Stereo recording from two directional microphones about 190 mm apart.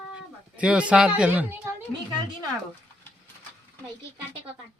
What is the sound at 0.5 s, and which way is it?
A man's voice, 5° right (ahead or behind).